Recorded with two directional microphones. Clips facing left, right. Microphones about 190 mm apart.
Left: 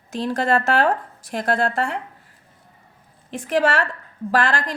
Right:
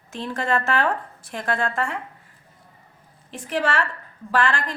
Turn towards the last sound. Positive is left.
turn(degrees=40)  # may be behind; listen again after turning